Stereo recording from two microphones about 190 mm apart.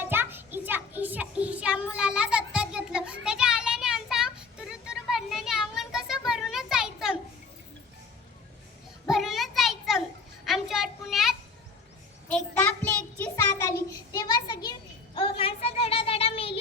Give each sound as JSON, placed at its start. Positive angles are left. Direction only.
{"t": 0.0, "sound": "child singing", "side_deg": -10}
{"t": 9.0, "sound": "a sound", "side_deg": 0}
{"t": 12.3, "sound": "child singing", "side_deg": 5}